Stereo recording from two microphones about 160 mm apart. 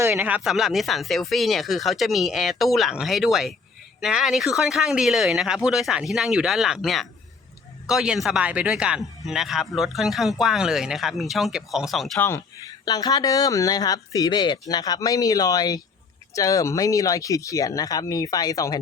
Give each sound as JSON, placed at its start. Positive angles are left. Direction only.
{"t": 0.0, "sound": "speech", "side_deg": -15}
{"t": 12.8, "sound": "speech", "side_deg": 25}